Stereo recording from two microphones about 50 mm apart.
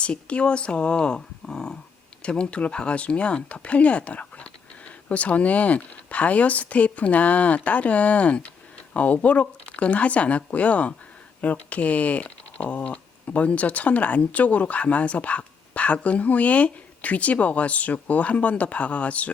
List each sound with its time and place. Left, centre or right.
0.0 s speech: left